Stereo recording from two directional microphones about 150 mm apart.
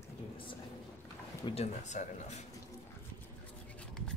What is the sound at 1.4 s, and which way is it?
Speech, 30° left (ahead or behind).